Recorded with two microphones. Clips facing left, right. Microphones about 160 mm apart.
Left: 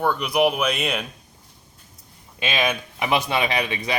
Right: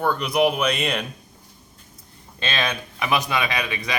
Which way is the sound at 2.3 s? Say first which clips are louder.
Left 2 dB; 15° left (ahead or behind).